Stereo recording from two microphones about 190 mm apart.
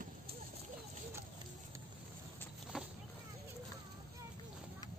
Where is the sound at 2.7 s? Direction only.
5° right (ahead or behind).